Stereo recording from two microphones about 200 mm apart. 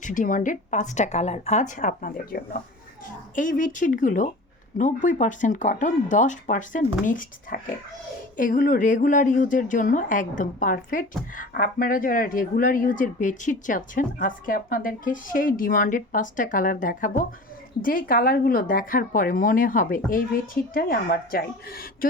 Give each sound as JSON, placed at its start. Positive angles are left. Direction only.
{"t": 0.0, "sound": "a woman's voice", "side_deg": 40}